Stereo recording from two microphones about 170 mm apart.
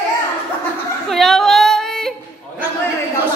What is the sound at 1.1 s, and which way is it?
Yodeling, centre (ahead or behind).